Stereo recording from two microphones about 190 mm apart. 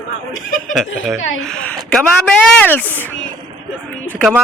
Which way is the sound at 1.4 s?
5° left (ahead or behind).